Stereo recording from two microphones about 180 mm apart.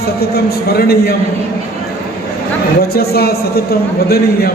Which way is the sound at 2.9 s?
60° left (ahead or behind).